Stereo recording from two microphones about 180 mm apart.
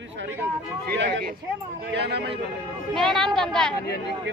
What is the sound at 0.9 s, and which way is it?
Speech, 75° right (ahead or behind).